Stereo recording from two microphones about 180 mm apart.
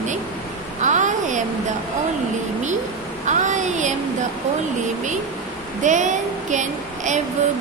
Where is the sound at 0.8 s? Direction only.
45° right (ahead or behind).